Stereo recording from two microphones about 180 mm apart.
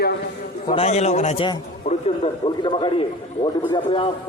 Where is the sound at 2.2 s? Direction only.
30° left (ahead or behind).